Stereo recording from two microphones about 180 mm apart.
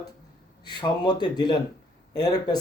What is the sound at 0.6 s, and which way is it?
Speech, 25° left (ahead or behind).